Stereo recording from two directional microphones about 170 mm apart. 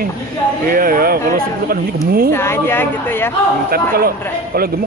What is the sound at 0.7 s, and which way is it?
Speech, 55° right (ahead or behind).